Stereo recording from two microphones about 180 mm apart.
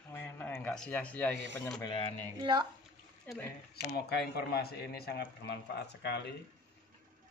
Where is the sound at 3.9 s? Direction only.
60° left (ahead or behind).